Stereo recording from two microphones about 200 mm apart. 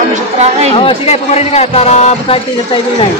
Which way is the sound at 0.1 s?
35° right (ahead or behind).